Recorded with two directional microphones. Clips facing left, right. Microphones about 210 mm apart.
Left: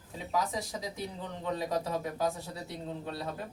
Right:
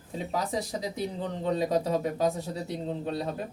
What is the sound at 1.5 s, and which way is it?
Speech, 20° right (ahead or behind).